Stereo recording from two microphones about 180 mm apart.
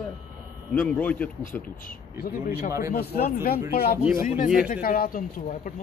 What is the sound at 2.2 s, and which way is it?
Speech, 55° left (ahead or behind).